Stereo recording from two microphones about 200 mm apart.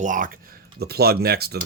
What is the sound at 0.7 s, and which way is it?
Speech, 50° right (ahead or behind).